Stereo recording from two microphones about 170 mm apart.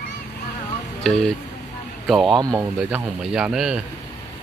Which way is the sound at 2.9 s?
5° right (ahead or behind).